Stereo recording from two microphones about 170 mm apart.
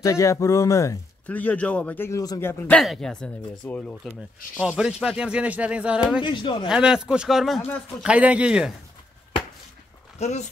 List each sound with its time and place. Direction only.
0.0 s speech: 20° left (ahead or behind)
2.6 s speech: 5° left (ahead or behind)
4.1 s speech: 5° right (ahead or behind)
6.2 s speech: 30° left (ahead or behind)
6.7 s speech: 5° right (ahead or behind)
10.1 s speech: 40° left (ahead or behind)